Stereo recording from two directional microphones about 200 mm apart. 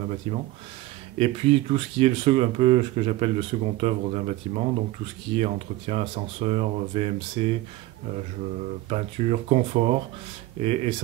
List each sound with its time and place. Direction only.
1.1 s speech: 30° right (ahead or behind)
8.8 s speech: 30° right (ahead or behind)